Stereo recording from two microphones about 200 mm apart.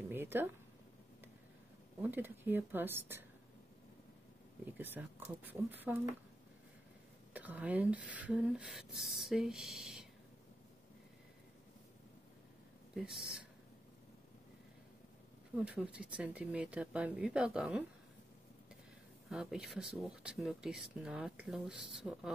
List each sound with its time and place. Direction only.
0.1 s a sound: 10° right (ahead or behind)
2.0 s speech: 10° right (ahead or behind)
4.6 s speech: 10° right (ahead or behind)
7.3 s speech: 10° right (ahead or behind)
12.9 s speech: centre (ahead or behind)
15.6 s speech: 5° right (ahead or behind)
19.2 s speech: centre (ahead or behind)